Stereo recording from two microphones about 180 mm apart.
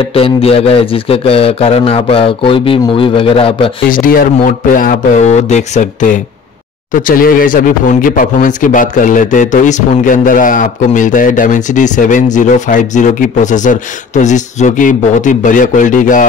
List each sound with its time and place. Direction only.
0.1 s speech: 35° left (ahead or behind)
3.9 s speech: 50° left (ahead or behind)